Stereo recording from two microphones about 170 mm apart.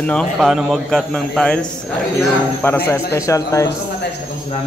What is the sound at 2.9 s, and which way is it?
Speech, 15° left (ahead or behind).